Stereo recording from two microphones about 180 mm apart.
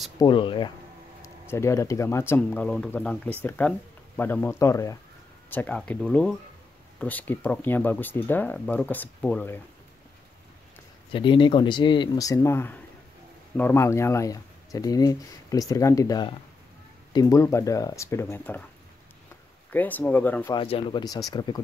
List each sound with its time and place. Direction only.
0.2 s speech: 30° left (ahead or behind)
1.2 s speech: 15° left (ahead or behind)
11.1 s speech: 30° left (ahead or behind); by 18.6 s 10° left (ahead or behind)
19.7 s speech: 10° left (ahead or behind)
20.5 s speech: 30° left (ahead or behind)